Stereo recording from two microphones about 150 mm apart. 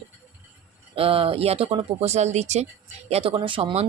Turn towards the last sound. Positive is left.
turn(degrees=-40)  # may be behind; listen again after turning